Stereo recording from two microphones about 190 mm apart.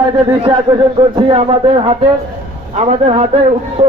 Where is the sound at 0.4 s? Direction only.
25° right (ahead or behind).